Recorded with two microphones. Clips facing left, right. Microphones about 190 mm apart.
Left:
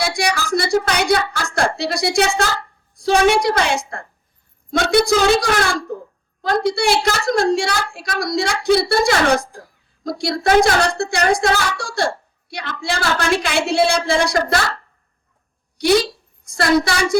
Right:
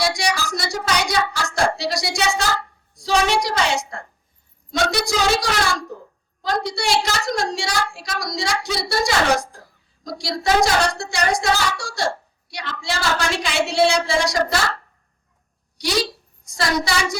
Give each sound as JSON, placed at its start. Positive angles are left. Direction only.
{"t": 0.0, "sound": "a sound", "side_deg": 55}
{"t": 2.9, "sound": "speech", "side_deg": 55}
{"t": 16.5, "sound": "speech", "side_deg": 60}